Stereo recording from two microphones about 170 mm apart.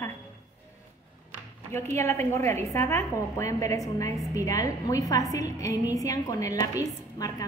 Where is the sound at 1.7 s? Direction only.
15° left (ahead or behind).